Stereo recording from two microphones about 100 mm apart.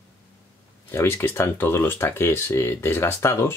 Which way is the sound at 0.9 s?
25° left (ahead or behind).